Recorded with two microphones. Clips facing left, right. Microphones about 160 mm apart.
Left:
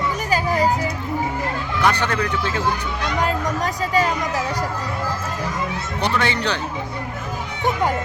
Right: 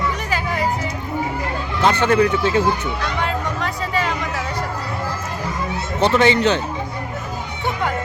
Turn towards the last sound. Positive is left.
turn(degrees=-20)  # may be behind; listen again after turning